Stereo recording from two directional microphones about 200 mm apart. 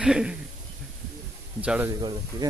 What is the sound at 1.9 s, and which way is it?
Speech, 20° right (ahead or behind).